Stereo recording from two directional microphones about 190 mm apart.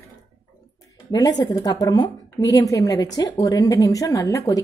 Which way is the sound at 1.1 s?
20° left (ahead or behind).